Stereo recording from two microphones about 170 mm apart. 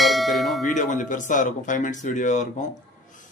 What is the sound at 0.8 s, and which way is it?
Speech, 50° left (ahead or behind).